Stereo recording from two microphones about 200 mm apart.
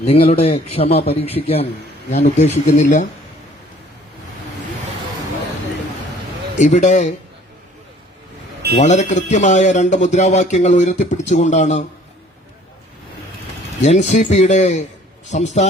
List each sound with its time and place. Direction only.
0.0 s a man's voice: 30° left (ahead or behind)
6.6 s a man's voice: 35° left (ahead or behind)
8.7 s a man's voice: 35° left (ahead or behind)
13.8 s a man's voice: 35° left (ahead or behind)